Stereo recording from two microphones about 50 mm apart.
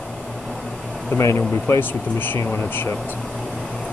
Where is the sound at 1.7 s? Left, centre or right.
Left.